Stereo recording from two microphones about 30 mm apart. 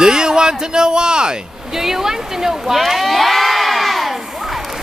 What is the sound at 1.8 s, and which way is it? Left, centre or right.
A woman's voice, centre.